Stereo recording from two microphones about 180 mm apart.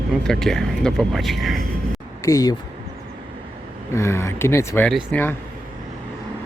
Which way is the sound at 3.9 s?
15° left (ahead or behind).